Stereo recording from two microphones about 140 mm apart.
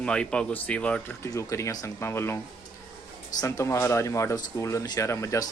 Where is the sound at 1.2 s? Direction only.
20° left (ahead or behind).